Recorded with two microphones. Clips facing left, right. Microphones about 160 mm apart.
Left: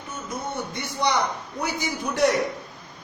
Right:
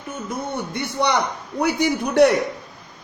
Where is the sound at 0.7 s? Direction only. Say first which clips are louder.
Right 4 dB; 65° right (ahead or behind).